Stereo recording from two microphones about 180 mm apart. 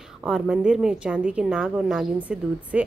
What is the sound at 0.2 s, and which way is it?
A woman's voice, 5° right (ahead or behind).